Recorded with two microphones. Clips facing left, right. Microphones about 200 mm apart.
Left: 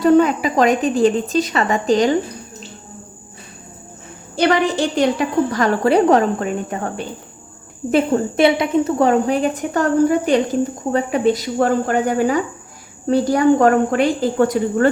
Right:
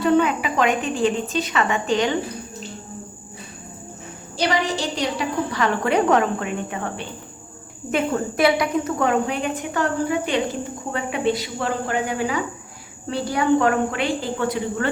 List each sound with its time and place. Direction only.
0.0 s speech: 40° left (ahead or behind)
4.4 s speech: 55° left (ahead or behind)